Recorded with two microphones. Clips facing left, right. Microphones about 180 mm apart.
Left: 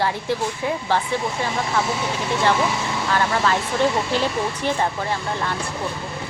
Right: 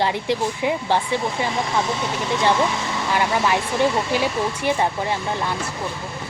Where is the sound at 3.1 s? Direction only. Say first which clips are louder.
Right 1 dB; 15° right (ahead or behind).